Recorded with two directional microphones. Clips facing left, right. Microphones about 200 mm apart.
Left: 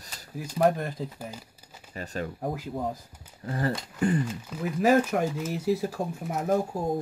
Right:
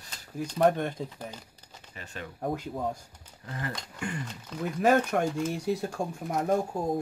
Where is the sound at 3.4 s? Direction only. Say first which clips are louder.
Left 8 dB; 35° left (ahead or behind).